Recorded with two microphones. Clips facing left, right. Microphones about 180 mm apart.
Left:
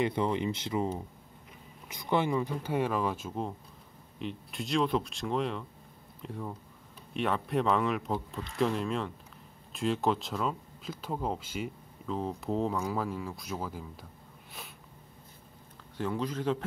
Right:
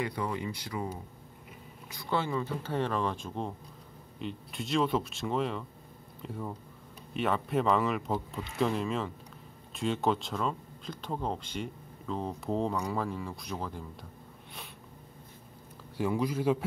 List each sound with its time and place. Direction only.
0.0 s speech: 25° left (ahead or behind)
1.9 s speech: 20° left (ahead or behind)
16.0 s speech: 10° right (ahead or behind)